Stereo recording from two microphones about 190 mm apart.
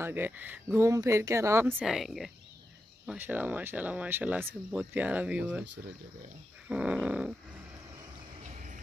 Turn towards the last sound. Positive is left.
turn(degrees=-5)  # may be behind; listen again after turning